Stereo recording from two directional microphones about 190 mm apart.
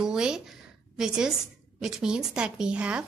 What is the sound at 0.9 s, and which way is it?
A woman's voice, 5° right (ahead or behind).